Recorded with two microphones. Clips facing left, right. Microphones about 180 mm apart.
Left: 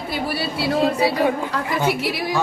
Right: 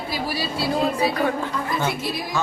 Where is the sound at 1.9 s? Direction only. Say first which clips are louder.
Left 3 dB; 75° left (ahead or behind).